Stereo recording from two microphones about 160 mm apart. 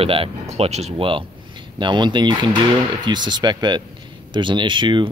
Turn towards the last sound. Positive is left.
turn(degrees=-30)  # may be behind; listen again after turning